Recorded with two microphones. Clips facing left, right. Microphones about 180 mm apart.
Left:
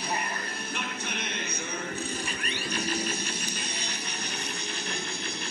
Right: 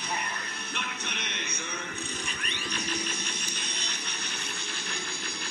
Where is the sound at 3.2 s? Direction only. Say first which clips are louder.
Left 4 dB; 5° left (ahead or behind).